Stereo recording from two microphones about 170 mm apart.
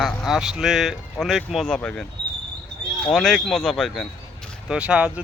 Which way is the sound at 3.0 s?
Centre (ahead or behind).